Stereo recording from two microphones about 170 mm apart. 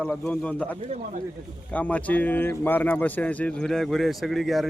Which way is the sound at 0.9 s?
40° right (ahead or behind).